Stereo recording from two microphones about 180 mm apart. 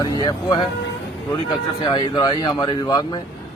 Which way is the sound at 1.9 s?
25° left (ahead or behind).